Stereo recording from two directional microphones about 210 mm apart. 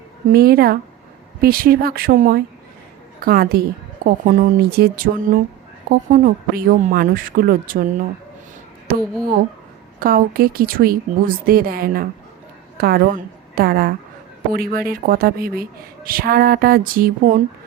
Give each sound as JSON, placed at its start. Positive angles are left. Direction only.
{"t": 0.3, "sound": "a woman's voice", "side_deg": -45}